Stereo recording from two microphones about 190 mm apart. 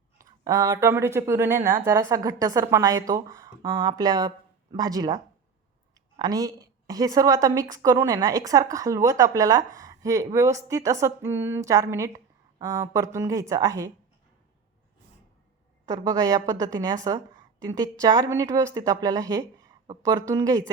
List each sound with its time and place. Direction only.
0.2 s a woman's voice: 20° right (ahead or behind)
15.9 s speech: 20° right (ahead or behind)